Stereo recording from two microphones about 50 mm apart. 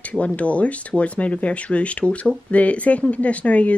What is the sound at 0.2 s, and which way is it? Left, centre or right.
Speech, left.